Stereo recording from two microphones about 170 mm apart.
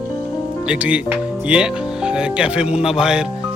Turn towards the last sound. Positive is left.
turn(degrees=-5)  # may be behind; listen again after turning